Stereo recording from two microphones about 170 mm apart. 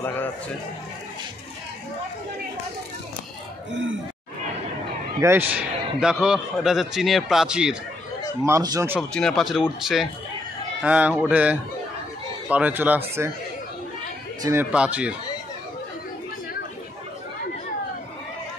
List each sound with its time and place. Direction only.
5.2 s a man's voice: 10° right (ahead or behind)
8.5 s a man's voice: 20° right (ahead or behind)
9.1 s a man's voice: centre (ahead or behind)
14.4 s a man's voice: 15° right (ahead or behind)